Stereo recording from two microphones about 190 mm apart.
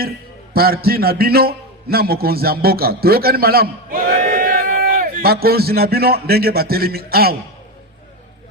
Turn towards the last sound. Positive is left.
turn(degrees=-55)  # may be behind; listen again after turning